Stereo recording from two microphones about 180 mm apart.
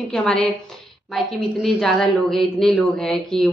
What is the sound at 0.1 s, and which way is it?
A woman's voice, 5° left (ahead or behind).